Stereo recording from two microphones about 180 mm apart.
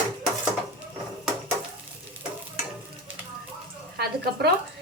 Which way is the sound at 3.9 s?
60° right (ahead or behind).